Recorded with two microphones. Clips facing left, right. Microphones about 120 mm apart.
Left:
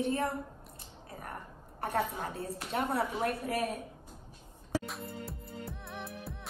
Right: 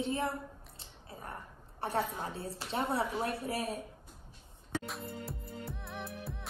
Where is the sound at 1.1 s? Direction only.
25° right (ahead or behind).